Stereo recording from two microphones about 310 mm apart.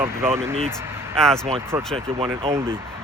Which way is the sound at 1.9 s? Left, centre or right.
Centre.